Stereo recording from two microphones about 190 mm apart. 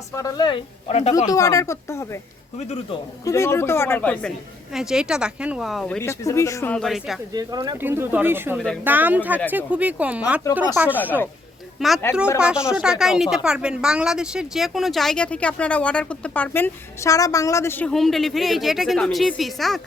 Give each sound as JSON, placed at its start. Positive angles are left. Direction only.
{"t": 0.1, "sound": "speech", "side_deg": 15}
{"t": 1.3, "sound": "speech", "side_deg": 15}
{"t": 3.2, "sound": "speech", "side_deg": 15}
{"t": 6.1, "sound": "speech", "side_deg": 15}
{"t": 6.7, "sound": "speech", "side_deg": 0}
{"t": 7.3, "sound": "speech", "side_deg": -20}
{"t": 8.5, "sound": "speech", "side_deg": 5}
{"t": 8.8, "sound": "speech", "side_deg": -10}
{"t": 11.8, "sound": "speech", "side_deg": 0}